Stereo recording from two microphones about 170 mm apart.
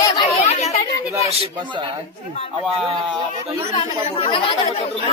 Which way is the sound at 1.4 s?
35° right (ahead or behind).